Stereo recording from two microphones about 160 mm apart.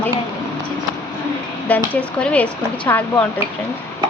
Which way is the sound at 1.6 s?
10° left (ahead or behind).